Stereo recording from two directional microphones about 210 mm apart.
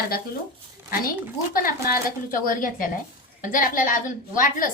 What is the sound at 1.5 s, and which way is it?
A woman's voice, 40° left (ahead or behind).